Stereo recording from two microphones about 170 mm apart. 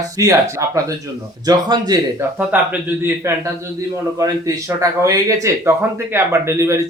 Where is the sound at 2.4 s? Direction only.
10° right (ahead or behind).